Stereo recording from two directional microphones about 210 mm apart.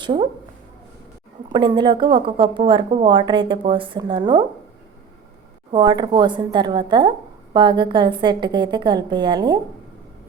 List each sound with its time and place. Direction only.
0.0 s speech: 20° right (ahead or behind)
1.5 s speech: 20° right (ahead or behind)
5.7 s speech: 20° right (ahead or behind)